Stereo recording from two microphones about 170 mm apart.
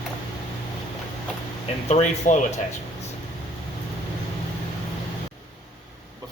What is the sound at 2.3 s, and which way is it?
Speech, 50° left (ahead or behind).